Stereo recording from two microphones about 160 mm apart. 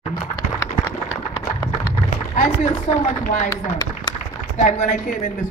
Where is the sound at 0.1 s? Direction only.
20° left (ahead or behind).